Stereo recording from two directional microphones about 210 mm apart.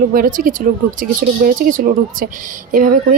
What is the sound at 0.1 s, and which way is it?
Speech, 40° right (ahead or behind).